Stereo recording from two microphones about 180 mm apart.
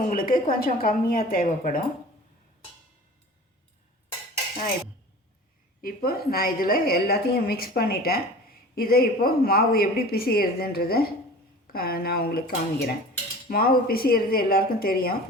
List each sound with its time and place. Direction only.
0.1 s a woman's voice: 55° left (ahead or behind)
5.8 s a woman's voice: 55° left (ahead or behind)